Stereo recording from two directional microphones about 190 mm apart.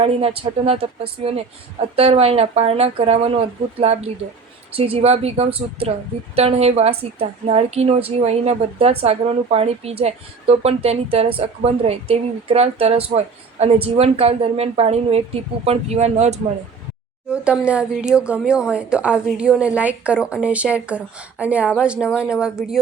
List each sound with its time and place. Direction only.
0.0 s a woman's voice: 30° right (ahead or behind)
17.3 s a woman's voice: 5° right (ahead or behind)